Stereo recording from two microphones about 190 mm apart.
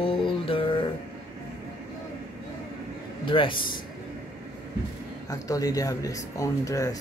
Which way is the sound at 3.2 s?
25° left (ahead or behind).